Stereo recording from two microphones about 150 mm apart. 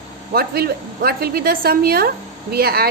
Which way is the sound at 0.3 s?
90° right.